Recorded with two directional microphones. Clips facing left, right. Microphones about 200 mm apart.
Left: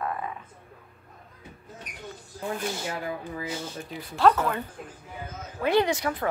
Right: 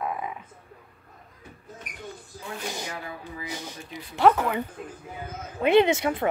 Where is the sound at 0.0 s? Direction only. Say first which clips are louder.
Right 1 dB; 10° right (ahead or behind).